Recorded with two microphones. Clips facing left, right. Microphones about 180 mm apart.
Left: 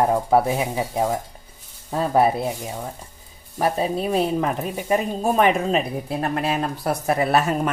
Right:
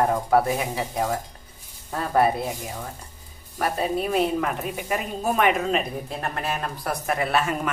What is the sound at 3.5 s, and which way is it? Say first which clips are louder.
Speech: left 3 dB; 25° left (ahead or behind).